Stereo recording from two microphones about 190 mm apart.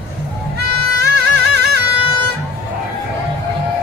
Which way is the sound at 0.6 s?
60° right (ahead or behind).